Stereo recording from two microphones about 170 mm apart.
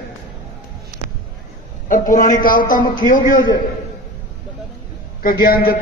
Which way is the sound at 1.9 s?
50° left (ahead or behind).